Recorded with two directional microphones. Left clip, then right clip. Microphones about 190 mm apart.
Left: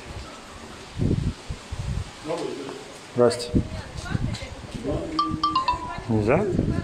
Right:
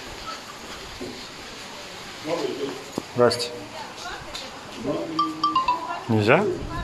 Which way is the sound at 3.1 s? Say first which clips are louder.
Even; 20° left (ahead or behind).